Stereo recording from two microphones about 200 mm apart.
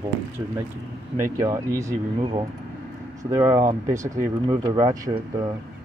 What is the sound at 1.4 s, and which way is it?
Speech, 15° right (ahead or behind).